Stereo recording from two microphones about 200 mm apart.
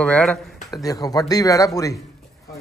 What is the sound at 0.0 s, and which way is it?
Speech, 5° left (ahead or behind).